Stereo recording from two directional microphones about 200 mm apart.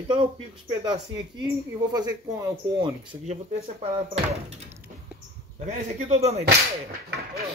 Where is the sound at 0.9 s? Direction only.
20° right (ahead or behind).